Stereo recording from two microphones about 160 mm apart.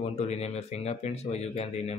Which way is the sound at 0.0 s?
40° left (ahead or behind).